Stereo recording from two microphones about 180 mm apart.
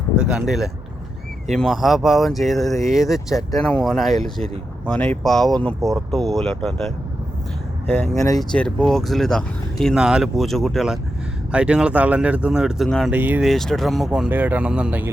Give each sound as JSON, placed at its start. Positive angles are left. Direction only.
{"t": 0.2, "sound": "speech", "side_deg": -5}
{"t": 8.1, "sound": "speech", "side_deg": 20}
{"t": 8.4, "sound": "speech", "side_deg": 5}
{"t": 13.1, "sound": "speech", "side_deg": -10}
{"t": 13.5, "sound": "speech", "side_deg": 0}